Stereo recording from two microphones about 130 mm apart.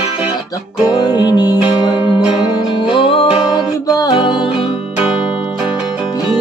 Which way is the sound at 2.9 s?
45° left (ahead or behind).